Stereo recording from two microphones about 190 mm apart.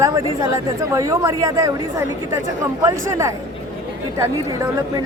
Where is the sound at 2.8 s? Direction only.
15° right (ahead or behind).